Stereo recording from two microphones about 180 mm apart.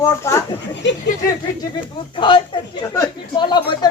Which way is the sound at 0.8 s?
80° left.